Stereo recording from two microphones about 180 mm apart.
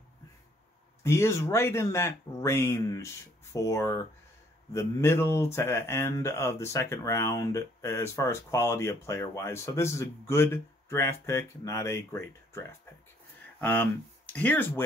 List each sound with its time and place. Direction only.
1.0 s speech: 15° left (ahead or behind)